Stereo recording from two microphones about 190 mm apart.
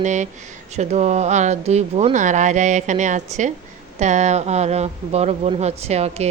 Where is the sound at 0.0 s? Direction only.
40° right (ahead or behind).